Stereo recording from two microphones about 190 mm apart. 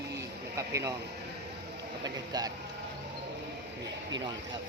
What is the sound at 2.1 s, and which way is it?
Speech, 20° right (ahead or behind).